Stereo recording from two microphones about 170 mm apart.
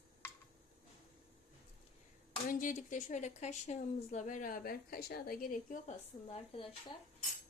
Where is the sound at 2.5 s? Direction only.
50° left (ahead or behind).